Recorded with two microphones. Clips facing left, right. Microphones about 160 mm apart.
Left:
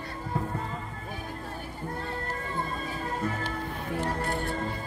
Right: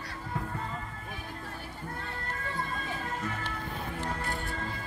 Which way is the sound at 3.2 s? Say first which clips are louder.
Left 5 dB; 35° left (ahead or behind).